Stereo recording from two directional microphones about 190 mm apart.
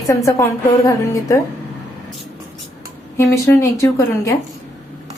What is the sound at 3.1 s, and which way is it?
A woman's voice, 15° left (ahead or behind).